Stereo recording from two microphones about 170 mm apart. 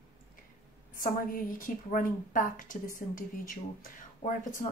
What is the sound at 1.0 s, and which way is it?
A woman's voice, 55° left (ahead or behind).